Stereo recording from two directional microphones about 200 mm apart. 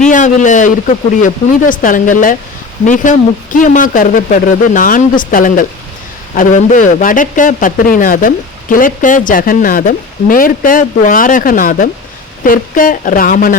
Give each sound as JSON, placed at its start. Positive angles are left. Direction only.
{"t": 0.0, "sound": "speech", "side_deg": 40}